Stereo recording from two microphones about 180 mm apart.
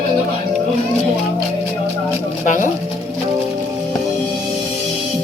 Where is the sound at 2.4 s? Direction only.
50° left (ahead or behind).